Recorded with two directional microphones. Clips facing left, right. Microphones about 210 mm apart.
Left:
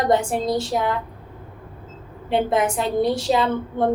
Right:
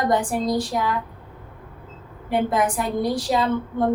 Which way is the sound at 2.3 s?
25° left (ahead or behind).